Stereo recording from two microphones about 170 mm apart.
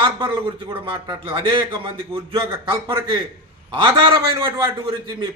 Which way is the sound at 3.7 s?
25° right (ahead or behind).